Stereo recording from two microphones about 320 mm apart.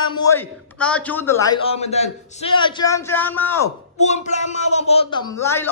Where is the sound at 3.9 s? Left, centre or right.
Left.